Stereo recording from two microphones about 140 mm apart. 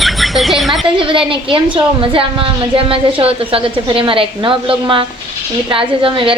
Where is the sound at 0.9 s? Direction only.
40° right (ahead or behind).